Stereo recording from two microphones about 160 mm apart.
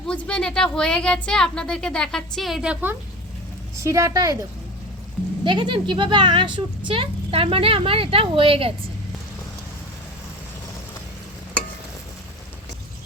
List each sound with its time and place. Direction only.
0.1 s a woman's voice: 5° left (ahead or behind)
3.8 s a woman's voice: 20° right (ahead or behind)
5.5 s speech: 30° right (ahead or behind)